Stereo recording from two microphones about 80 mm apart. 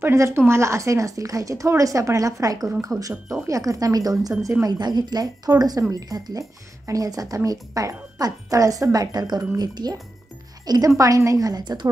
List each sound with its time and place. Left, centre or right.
0.0 s speech: right
10.6 s music: right
11.0 s speech: right
11.6 s speech: right